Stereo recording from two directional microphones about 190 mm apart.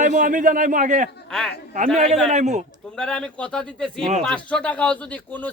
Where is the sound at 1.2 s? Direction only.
5° left (ahead or behind).